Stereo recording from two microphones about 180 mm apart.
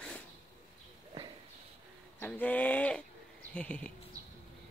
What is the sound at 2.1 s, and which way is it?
Speech, 10° left (ahead or behind).